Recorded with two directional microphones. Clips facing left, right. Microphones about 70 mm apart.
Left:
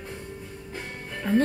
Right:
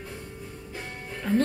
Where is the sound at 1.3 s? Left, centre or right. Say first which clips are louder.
Left 2 dB; centre.